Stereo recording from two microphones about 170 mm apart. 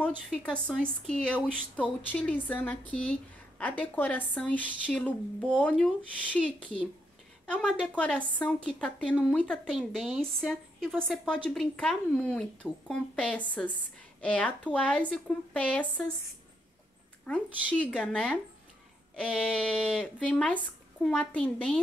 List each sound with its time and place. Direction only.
0.3 s a woman's voice: 5° left (ahead or behind)
17.3 s a woman's voice: 5° left (ahead or behind)